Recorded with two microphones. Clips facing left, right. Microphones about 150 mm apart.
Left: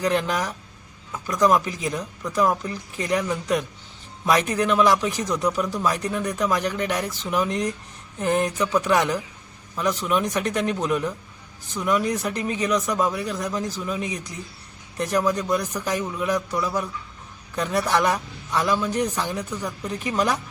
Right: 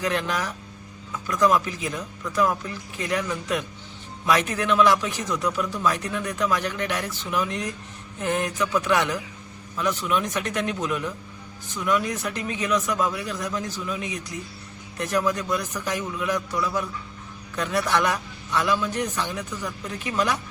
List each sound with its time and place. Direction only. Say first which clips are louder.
0.0 s a man's voice: left 3 dB; 35° left (ahead or behind)